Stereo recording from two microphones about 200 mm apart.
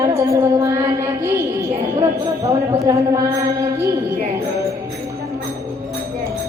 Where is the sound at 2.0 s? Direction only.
15° right (ahead or behind).